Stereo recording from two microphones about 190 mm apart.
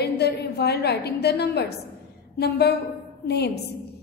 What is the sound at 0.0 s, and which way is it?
A woman's voice, 60° left (ahead or behind).